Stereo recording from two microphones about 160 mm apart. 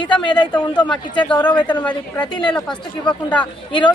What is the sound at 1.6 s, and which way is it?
Speech, 30° left (ahead or behind).